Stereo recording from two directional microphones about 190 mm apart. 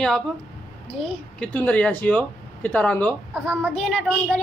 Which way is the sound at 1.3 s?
5° left (ahead or behind).